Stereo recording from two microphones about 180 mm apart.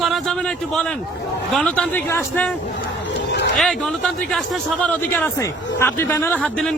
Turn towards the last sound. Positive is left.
turn(degrees=5)  # may be behind; listen again after turning